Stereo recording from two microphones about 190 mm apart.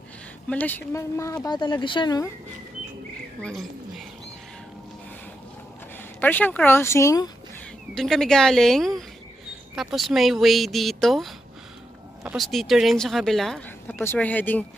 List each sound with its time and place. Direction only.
0.5 s a woman's voice: 10° left (ahead or behind)
6.2 s a woman's voice: 10° left (ahead or behind)
7.9 s speech: centre (ahead or behind)